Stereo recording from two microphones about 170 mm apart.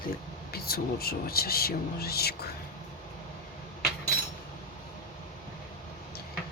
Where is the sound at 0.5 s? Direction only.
65° left (ahead or behind).